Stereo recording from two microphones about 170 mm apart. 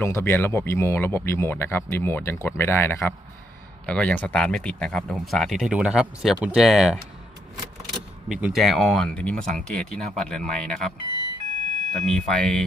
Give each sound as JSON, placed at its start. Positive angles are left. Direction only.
{"t": 0.0, "sound": "speech", "side_deg": 15}
{"t": 11.4, "sound": "a sound", "side_deg": -45}
{"t": 11.9, "sound": "speech", "side_deg": 5}